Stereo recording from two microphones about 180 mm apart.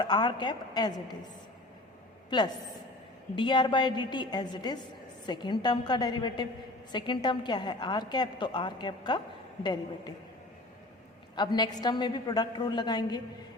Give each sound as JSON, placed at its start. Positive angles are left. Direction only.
{"t": 0.0, "sound": "a woman's voice", "side_deg": 25}
{"t": 3.3, "sound": "a woman's voice", "side_deg": 25}
{"t": 11.3, "sound": "a woman's voice", "side_deg": 25}